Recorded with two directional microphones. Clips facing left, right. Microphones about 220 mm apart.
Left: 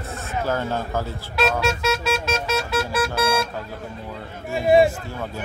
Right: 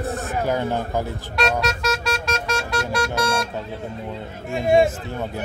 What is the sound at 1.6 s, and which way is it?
Vehicle, centre (ahead or behind).